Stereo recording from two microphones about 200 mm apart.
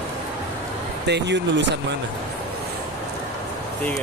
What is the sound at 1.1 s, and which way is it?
Speech, 60° right (ahead or behind).